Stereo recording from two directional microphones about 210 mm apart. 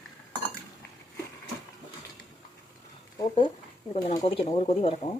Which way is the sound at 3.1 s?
25° left (ahead or behind).